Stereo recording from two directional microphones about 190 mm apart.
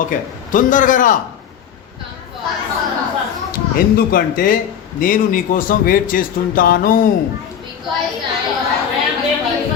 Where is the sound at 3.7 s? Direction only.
50° left (ahead or behind).